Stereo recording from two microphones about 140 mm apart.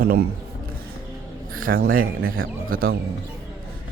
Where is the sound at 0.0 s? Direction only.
90° right.